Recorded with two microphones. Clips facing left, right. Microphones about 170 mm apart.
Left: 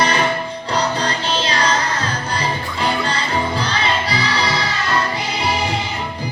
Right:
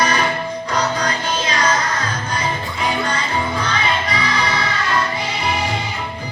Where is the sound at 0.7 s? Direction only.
30° left (ahead or behind).